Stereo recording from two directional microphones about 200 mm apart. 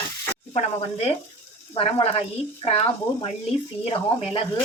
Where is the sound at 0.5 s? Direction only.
30° left (ahead or behind).